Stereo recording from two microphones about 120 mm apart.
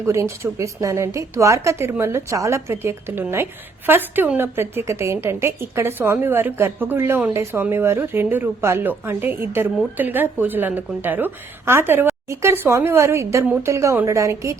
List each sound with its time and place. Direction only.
0.0 s a woman's voice: 25° right (ahead or behind)